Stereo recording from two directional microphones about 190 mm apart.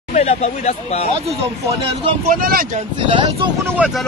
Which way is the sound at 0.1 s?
35° left (ahead or behind).